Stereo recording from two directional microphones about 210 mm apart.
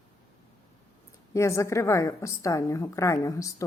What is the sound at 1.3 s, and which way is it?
Speech, 15° left (ahead or behind).